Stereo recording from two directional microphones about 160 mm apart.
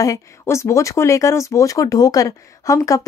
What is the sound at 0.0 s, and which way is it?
Speech, 20° left (ahead or behind).